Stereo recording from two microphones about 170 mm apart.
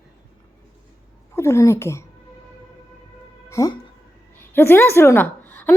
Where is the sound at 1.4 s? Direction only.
15° left (ahead or behind).